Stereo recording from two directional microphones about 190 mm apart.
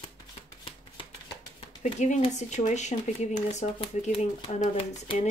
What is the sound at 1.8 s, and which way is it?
Speech, 40° left (ahead or behind).